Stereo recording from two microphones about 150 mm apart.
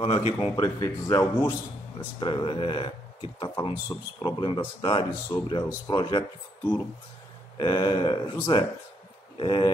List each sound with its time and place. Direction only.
0.0 s speech: 40° left (ahead or behind)
0.6 s speech: 25° left (ahead or behind)
2.0 s speech: 35° left (ahead or behind)
7.5 s speech: 35° left (ahead or behind)